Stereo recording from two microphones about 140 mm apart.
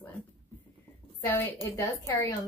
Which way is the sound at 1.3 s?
15° left (ahead or behind).